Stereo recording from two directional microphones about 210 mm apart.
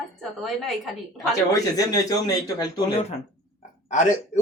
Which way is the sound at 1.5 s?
15° left (ahead or behind).